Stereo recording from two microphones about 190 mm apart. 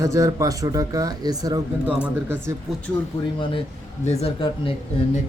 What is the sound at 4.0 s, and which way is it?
Speech, 35° left (ahead or behind).